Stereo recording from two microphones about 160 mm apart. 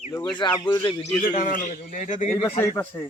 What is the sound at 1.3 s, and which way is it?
Speech, 55° left (ahead or behind).